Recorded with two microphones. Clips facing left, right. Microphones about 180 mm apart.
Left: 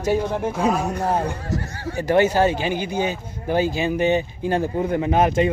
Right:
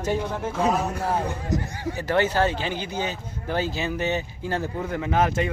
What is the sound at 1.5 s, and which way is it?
Speech, 15° right (ahead or behind).